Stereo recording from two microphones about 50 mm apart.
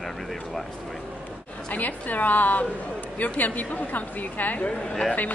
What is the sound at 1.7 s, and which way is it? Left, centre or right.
Speech, left.